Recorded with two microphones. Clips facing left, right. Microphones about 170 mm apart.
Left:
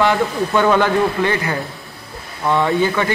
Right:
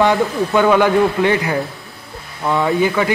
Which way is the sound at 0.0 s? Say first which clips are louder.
Right 2 dB; 20° right (ahead or behind).